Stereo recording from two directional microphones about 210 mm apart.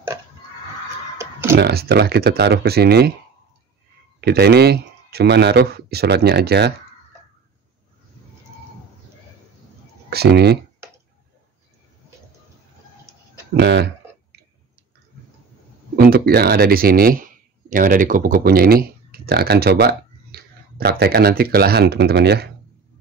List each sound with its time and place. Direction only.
1.1 s a sound: 10° right (ahead or behind)
1.6 s speech: 50° right (ahead or behind)
4.2 s speech: 50° right (ahead or behind)
10.0 s speech: 50° right (ahead or behind)
13.6 s speech: 55° right (ahead or behind)
16.0 s speech: 45° right (ahead or behind)